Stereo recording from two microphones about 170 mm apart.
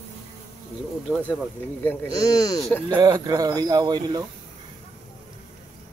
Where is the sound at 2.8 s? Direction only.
25° right (ahead or behind).